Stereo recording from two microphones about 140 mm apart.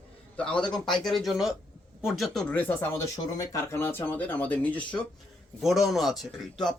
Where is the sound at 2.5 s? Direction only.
15° left (ahead or behind).